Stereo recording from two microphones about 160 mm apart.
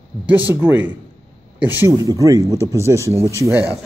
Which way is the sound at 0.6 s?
15° right (ahead or behind).